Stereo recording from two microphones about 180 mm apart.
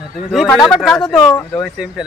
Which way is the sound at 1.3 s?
15° left (ahead or behind).